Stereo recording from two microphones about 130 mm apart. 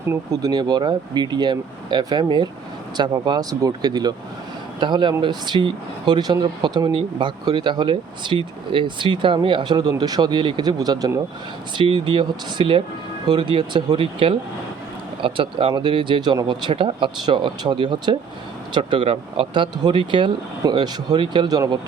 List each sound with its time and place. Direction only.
0.1 s speech: 30° right (ahead or behind)